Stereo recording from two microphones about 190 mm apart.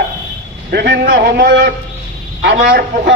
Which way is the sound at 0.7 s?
60° right (ahead or behind).